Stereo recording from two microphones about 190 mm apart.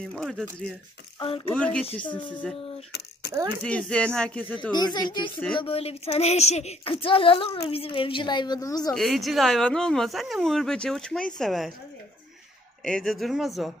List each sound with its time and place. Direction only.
0.0 s speech: centre (ahead or behind)
1.2 s a woman's voice: 30° left (ahead or behind)
1.5 s speech: 5° left (ahead or behind)
3.6 s speech: 5° left (ahead or behind)
4.7 s a woman's voice: 20° left (ahead or behind)
8.9 s speech: centre (ahead or behind)
12.8 s speech: centre (ahead or behind)